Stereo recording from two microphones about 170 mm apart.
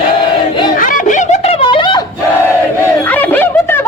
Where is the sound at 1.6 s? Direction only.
30° left (ahead or behind).